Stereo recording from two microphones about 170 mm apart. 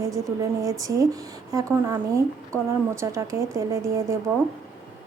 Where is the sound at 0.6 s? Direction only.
20° right (ahead or behind).